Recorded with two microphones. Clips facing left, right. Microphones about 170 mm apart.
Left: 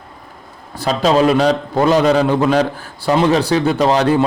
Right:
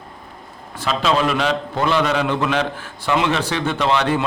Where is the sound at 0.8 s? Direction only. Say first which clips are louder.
Left 5 dB; 40° left (ahead or behind).